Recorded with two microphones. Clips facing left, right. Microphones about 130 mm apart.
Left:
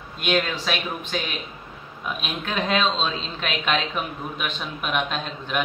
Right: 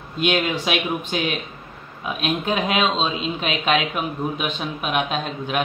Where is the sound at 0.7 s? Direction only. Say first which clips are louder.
Right 4 dB; 10° right (ahead or behind).